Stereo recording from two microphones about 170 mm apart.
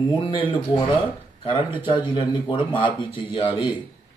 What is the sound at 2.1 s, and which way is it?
A man's voice, 30° left (ahead or behind).